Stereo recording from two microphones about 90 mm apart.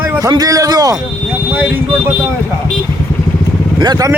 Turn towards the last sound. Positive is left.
turn(degrees=-50)  # may be behind; listen again after turning